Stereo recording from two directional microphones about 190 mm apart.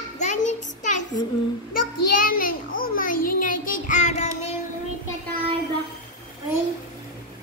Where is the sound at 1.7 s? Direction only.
50° left (ahead or behind).